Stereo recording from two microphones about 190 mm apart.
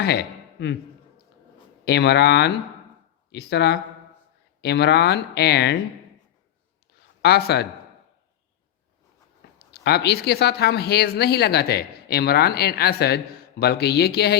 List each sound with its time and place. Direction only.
1.8 s speech: 60° left (ahead or behind)
7.2 s speech: 60° left (ahead or behind)
9.8 s speech: 60° left (ahead or behind)